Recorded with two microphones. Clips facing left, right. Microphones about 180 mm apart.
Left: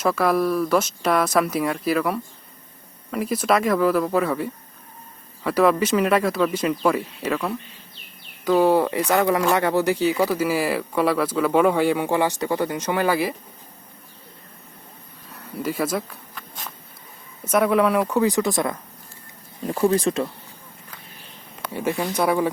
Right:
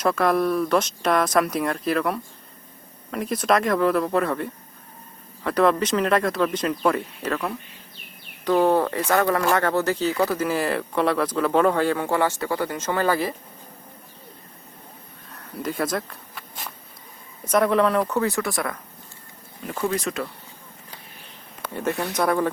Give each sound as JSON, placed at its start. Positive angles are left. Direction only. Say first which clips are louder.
{"t": 0.0, "sound": "speech", "louder": "even", "side_deg": 5}
{"t": 8.4, "sound": "speech", "louder": "left 2 dB", "side_deg": 5}
{"t": 15.3, "sound": "speech", "louder": "left 2 dB", "side_deg": 10}
{"t": 16.3, "sound": "a sound", "louder": "even", "side_deg": -10}
{"t": 17.4, "sound": "speech", "louder": "left 1 dB", "side_deg": 5}
{"t": 19.6, "sound": "speech", "louder": "left 6 dB", "side_deg": 30}
{"t": 21.7, "sound": "speech", "louder": "left 2 dB", "side_deg": 10}